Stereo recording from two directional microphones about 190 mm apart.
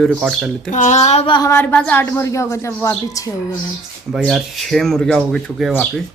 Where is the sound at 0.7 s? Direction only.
40° left (ahead or behind).